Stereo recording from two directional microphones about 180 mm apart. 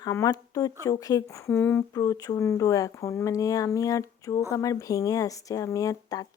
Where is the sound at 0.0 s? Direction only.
20° left (ahead or behind).